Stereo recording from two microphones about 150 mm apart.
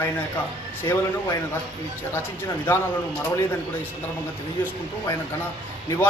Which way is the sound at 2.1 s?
15° left (ahead or behind).